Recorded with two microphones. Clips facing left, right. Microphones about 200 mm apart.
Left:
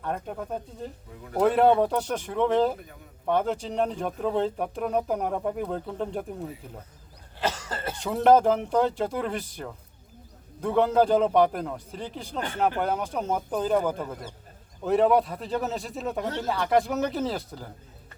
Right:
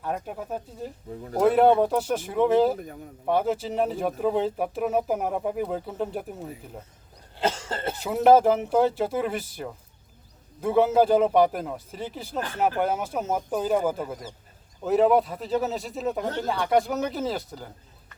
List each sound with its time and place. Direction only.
0.0 s speech: 5° right (ahead or behind)
1.1 s speech: 35° right (ahead or behind)
1.4 s speech: centre (ahead or behind)
7.3 s cough: 25° right (ahead or behind)
7.9 s speech: 5° right (ahead or behind)